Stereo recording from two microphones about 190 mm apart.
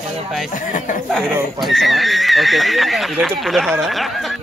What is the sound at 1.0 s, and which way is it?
Speech, centre (ahead or behind).